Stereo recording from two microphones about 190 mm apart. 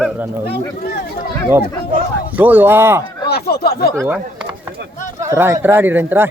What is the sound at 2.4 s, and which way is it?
Speech, 10° right (ahead or behind).